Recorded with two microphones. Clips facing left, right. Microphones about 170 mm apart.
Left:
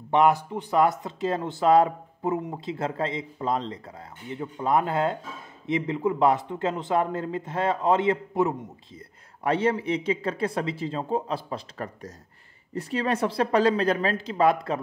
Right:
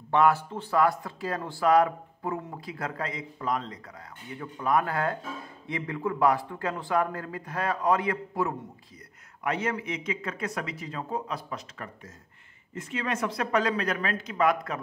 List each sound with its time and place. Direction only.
0.1 s speech: 20° left (ahead or behind)